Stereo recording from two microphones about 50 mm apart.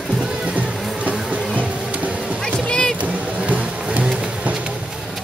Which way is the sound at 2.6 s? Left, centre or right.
Centre.